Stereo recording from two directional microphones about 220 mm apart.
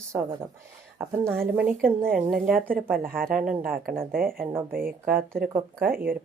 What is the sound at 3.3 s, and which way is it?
Speech, 5° right (ahead or behind).